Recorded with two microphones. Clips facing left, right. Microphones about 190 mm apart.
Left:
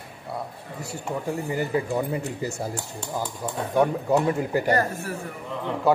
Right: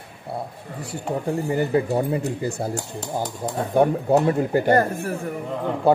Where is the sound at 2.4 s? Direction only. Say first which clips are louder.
Right 3 dB; 55° right (ahead or behind).